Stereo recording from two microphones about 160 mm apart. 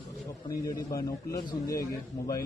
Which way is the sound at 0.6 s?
20° left (ahead or behind).